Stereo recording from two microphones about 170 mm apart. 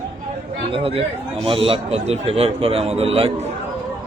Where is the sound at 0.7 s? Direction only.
35° right (ahead or behind).